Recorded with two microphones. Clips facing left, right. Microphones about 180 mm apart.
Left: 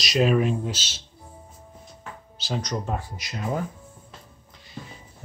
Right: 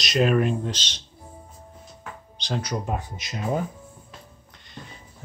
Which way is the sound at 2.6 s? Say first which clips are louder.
Right 1 dB; 10° right (ahead or behind).